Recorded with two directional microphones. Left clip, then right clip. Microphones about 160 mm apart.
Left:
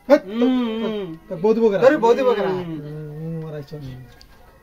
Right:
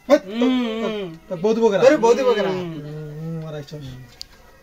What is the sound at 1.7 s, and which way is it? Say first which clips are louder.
Speech: right 3 dB; 10° left (ahead or behind).